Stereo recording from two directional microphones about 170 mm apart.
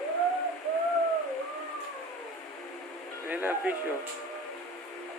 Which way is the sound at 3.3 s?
10° right (ahead or behind).